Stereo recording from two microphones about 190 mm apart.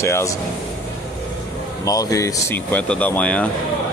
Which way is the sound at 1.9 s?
15° left (ahead or behind).